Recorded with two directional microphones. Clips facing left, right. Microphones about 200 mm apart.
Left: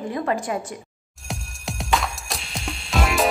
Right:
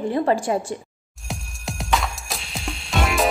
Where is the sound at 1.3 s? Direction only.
Centre (ahead or behind).